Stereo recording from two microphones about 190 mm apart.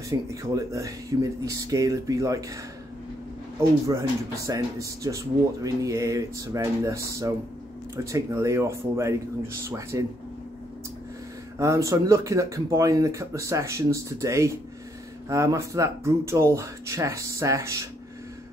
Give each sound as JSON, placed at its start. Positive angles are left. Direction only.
{"t": 0.1, "sound": "speech", "side_deg": -15}
{"t": 4.5, "sound": "speech", "side_deg": -15}
{"t": 11.5, "sound": "speech", "side_deg": -15}